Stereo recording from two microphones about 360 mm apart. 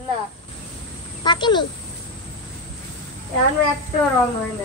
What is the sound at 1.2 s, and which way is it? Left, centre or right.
Speech, centre.